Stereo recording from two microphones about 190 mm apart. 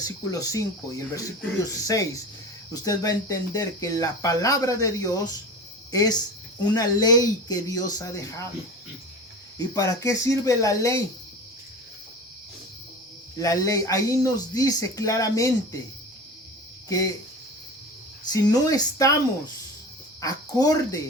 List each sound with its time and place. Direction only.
0.0 s speech: 20° left (ahead or behind)
9.7 s speech: 15° left (ahead or behind)
13.4 s speech: 20° left (ahead or behind)
18.3 s speech: 20° left (ahead or behind)
20.2 s speech: 20° left (ahead or behind)